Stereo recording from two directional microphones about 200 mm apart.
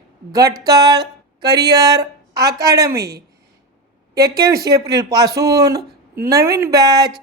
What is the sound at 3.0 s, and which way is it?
Speech, 50° right (ahead or behind).